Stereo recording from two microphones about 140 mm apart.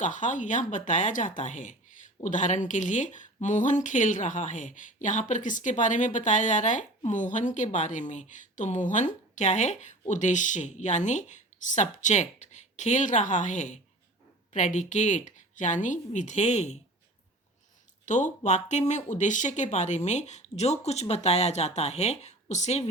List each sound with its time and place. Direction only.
0.0 s speech: 60° left (ahead or behind)
18.0 s speech: 60° left (ahead or behind)